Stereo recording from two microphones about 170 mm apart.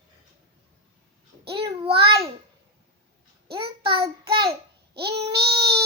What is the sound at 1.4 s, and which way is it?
Babbling, 30° right (ahead or behind).